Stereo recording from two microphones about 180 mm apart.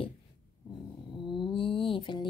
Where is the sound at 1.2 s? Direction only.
25° left (ahead or behind).